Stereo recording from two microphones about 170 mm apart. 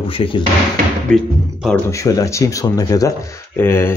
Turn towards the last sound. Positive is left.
turn(degrees=15)  # may be behind; listen again after turning